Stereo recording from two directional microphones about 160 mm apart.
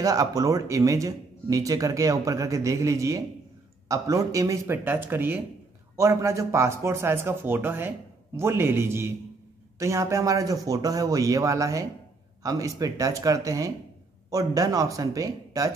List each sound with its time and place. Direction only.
0.0 s speech: 20° right (ahead or behind)